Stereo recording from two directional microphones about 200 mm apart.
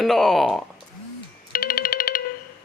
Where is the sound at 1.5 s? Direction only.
45° left (ahead or behind).